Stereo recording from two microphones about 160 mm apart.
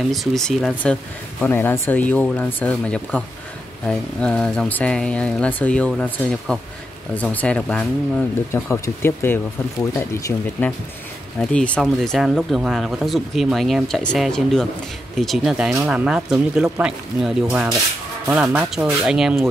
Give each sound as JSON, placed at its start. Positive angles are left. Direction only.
{"t": 0.1, "sound": "speech", "side_deg": 0}
{"t": 8.5, "sound": "speech", "side_deg": 20}
{"t": 11.5, "sound": "speech", "side_deg": 5}